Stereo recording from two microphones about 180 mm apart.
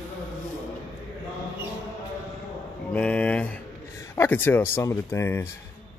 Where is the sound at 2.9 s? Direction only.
5° left (ahead or behind).